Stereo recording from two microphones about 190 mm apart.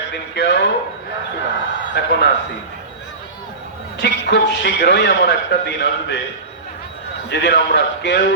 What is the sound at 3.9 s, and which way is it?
A man's voice, 65° left (ahead or behind).